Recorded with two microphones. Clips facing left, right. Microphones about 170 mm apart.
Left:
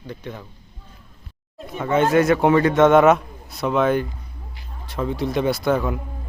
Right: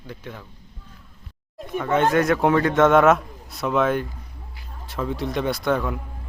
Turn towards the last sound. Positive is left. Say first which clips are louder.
# left 2 dB
turn(degrees=5)  # may be behind; listen again after turning